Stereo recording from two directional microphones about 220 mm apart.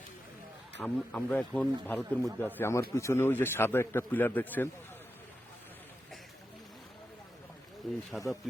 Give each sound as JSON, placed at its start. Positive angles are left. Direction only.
{"t": 0.8, "sound": "a man's voice", "side_deg": 5}
{"t": 7.8, "sound": "speech", "side_deg": 0}